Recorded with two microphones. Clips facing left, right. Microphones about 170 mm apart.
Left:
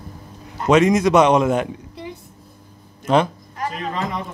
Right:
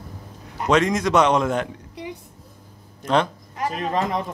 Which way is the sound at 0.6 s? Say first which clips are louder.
Left 5 dB; 10° left (ahead or behind).